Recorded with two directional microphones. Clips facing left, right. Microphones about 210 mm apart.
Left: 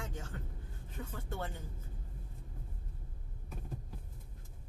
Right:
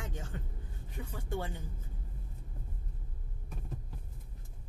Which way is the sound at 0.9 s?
10° right (ahead or behind).